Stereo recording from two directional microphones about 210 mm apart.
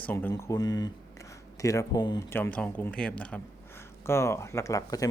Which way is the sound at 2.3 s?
10° left (ahead or behind).